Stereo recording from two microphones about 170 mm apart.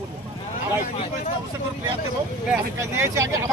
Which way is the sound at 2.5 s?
15° right (ahead or behind).